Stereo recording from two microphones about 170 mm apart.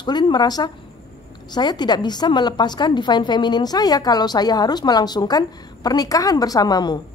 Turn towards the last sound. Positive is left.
turn(degrees=25)  # may be behind; listen again after turning